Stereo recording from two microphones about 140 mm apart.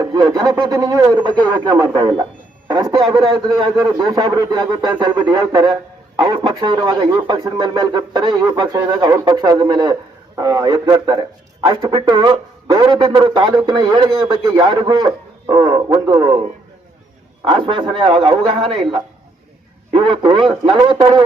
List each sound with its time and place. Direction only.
0.0 s a man's voice: 30° right (ahead or behind)
17.4 s speech: 35° right (ahead or behind)